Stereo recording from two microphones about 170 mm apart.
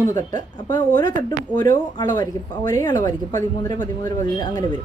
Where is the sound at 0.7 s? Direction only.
25° left (ahead or behind).